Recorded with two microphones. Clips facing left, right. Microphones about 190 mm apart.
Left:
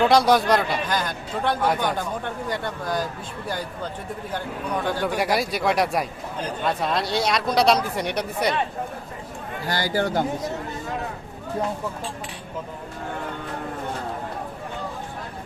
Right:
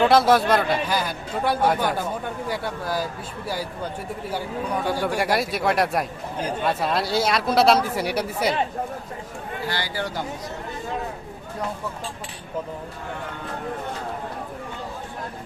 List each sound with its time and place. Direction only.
0.0 s speech: centre (ahead or behind)
4.3 s a man's voice: 10° right (ahead or behind)
5.0 s speech: 5° left (ahead or behind)
9.6 s a man's voice: 45° left (ahead or behind)